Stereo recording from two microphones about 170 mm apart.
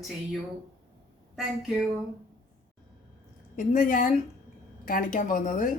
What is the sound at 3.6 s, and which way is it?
Speech, 50° left (ahead or behind).